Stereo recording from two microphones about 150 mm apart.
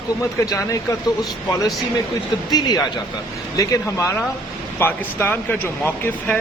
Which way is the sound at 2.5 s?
25° left (ahead or behind).